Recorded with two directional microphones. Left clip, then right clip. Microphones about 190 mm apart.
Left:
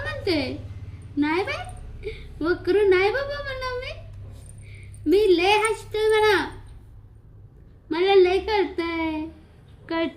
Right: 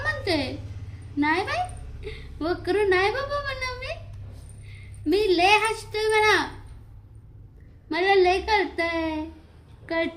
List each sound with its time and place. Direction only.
0.0 s a sound: 15° right (ahead or behind)
1.2 s a woman's voice: 15° right (ahead or behind)
5.0 s speech: 15° right (ahead or behind)
7.9 s speech: 15° right (ahead or behind)